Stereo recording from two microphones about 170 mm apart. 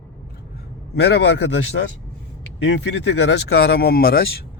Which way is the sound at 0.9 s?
80° left.